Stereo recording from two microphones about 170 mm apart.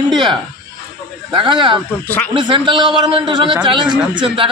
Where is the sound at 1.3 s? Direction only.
30° right (ahead or behind).